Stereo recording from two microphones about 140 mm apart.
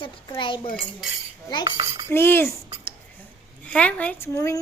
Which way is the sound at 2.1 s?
15° left (ahead or behind).